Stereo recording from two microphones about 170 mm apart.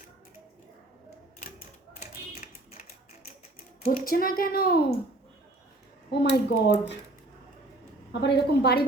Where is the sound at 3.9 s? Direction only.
60° left (ahead or behind).